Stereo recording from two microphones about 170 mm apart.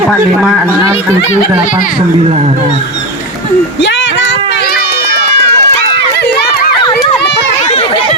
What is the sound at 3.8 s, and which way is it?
Run, 90° left.